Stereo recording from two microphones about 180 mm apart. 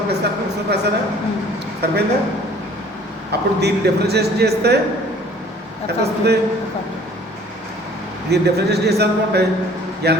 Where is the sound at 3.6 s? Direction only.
65° right (ahead or behind).